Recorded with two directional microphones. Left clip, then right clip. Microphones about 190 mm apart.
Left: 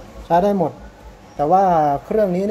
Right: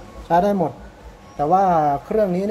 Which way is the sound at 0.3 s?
5° left (ahead or behind).